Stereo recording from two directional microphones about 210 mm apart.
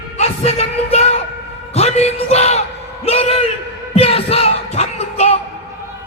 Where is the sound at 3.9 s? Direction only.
30° left (ahead or behind).